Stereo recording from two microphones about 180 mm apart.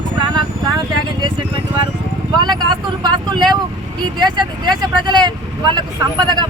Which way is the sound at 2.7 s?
25° right (ahead or behind).